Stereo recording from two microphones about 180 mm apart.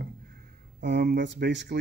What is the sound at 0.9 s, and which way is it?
Speech, 65° right (ahead or behind).